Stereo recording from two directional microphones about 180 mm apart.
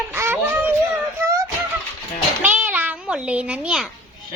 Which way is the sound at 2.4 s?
10° right (ahead or behind).